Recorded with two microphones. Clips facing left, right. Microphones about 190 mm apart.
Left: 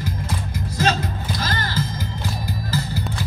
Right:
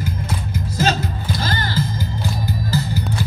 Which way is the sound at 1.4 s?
30° right (ahead or behind).